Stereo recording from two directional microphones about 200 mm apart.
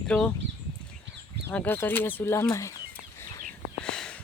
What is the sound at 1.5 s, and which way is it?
Speech, 10° left (ahead or behind).